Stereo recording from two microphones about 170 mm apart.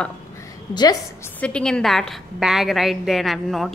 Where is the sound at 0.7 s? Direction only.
20° left (ahead or behind).